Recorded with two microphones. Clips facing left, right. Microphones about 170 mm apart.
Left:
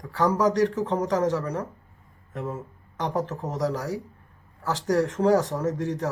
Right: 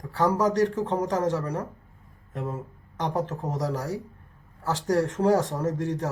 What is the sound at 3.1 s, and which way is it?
Speech, 30° right (ahead or behind).